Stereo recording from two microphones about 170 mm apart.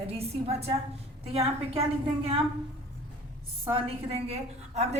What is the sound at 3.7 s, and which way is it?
A woman's voice, 35° right (ahead or behind).